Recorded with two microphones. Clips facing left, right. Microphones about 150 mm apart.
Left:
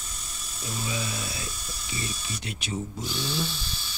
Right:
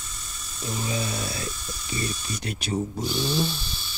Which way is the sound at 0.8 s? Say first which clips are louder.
Right 3 dB; 40° right (ahead or behind).